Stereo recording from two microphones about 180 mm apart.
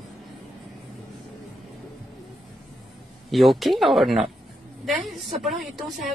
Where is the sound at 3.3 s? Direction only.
Centre (ahead or behind).